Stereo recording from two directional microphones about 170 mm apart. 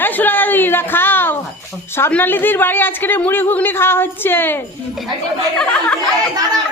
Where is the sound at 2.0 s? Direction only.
10° left (ahead or behind).